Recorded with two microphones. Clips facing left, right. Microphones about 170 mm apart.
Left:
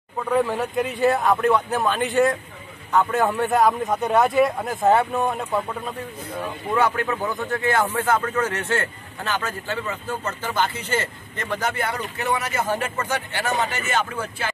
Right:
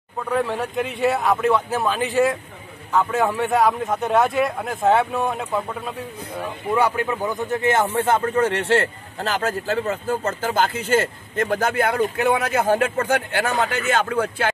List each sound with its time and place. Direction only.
0.2 s a man's voice: centre (ahead or behind)
6.7 s a man's voice: 10° right (ahead or behind); by 14.5 s 65° right (ahead or behind)